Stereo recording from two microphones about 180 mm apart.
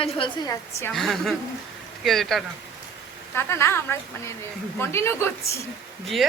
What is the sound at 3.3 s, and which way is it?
A woman's voice, 15° left (ahead or behind).